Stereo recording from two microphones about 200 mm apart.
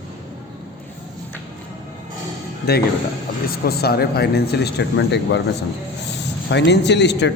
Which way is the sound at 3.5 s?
50° left (ahead or behind).